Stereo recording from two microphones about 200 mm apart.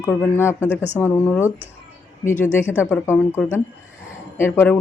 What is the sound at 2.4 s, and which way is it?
Speech, 10° left (ahead or behind).